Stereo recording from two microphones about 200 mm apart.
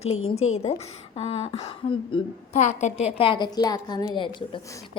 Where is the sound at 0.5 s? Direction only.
30° left (ahead or behind).